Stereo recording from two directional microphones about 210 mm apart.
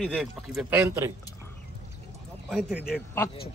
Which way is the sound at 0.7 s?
15° right (ahead or behind).